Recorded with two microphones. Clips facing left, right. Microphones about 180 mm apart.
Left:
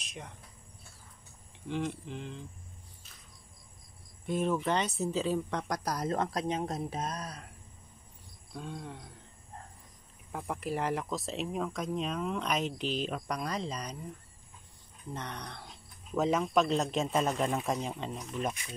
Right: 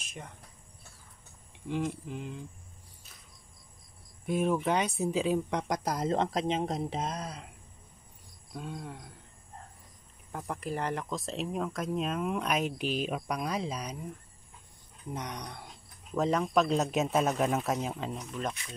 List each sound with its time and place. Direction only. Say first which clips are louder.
0.0 s a sound: even; centre (ahead or behind)
1.7 s speech: right 2 dB; 5° right (ahead or behind)
4.3 s speech: right 2 dB; 10° right (ahead or behind)
8.5 s speech: right 1 dB; 5° right (ahead or behind)
10.3 s speech: left 1 dB; centre (ahead or behind)
15.1 s speech: right 2 dB; 15° right (ahead or behind)
16.2 s speech: right 1 dB; centre (ahead or behind)
18.3 s speech: left 1 dB; 10° left (ahead or behind)